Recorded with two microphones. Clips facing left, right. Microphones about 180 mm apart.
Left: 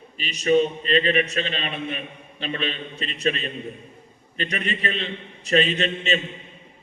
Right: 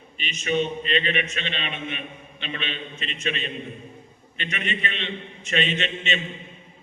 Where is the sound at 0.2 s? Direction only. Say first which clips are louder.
Left 6 dB; 35° left (ahead or behind).